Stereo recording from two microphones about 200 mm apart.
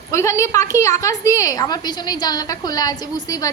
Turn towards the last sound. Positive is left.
turn(degrees=20)  # may be behind; listen again after turning